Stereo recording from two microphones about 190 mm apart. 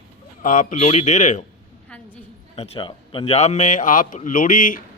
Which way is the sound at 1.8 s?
5° left (ahead or behind).